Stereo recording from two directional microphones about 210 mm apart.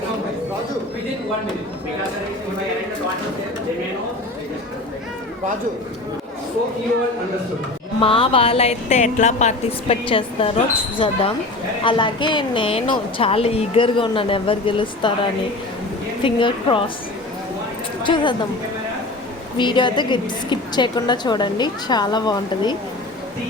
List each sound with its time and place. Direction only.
8.0 s a woman's voice: 25° left (ahead or behind)
18.0 s a woman's voice: 20° left (ahead or behind)
19.5 s a woman's voice: 20° left (ahead or behind)